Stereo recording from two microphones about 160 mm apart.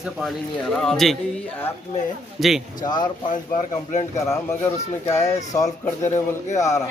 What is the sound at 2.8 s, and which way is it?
Speech, 25° left (ahead or behind).